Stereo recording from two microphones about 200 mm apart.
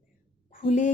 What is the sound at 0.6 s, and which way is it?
Speech, 40° left (ahead or behind).